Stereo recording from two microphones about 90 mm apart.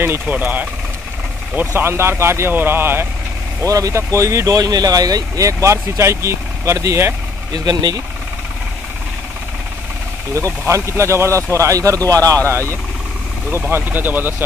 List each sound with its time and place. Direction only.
0.0 s speech: 20° right (ahead or behind)
3.6 s speech: 40° right (ahead or behind)
7.5 s speech: 45° right (ahead or behind)
10.7 s speech: 35° right (ahead or behind)